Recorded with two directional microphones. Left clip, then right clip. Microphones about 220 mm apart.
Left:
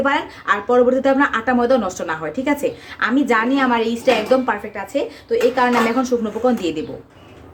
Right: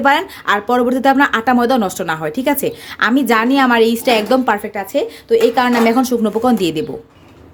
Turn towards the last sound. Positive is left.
turn(degrees=-50)  # may be behind; listen again after turning